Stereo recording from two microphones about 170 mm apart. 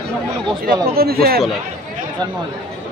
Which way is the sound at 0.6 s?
65° right (ahead or behind).